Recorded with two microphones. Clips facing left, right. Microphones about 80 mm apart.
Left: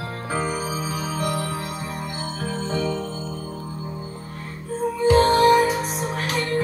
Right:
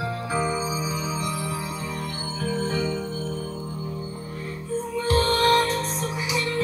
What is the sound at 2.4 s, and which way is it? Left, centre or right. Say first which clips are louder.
Music: right 1 dB; left.